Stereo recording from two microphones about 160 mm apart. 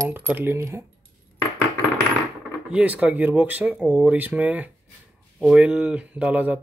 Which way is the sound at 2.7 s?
10° right (ahead or behind).